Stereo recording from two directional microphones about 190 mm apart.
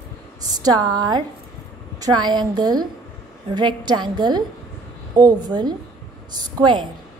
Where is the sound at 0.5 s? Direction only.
20° right (ahead or behind).